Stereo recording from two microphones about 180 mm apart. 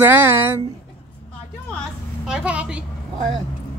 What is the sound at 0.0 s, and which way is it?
Speech, 10° right (ahead or behind).